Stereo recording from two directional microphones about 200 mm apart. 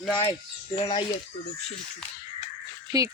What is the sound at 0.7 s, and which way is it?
Speech, 25° left (ahead or behind).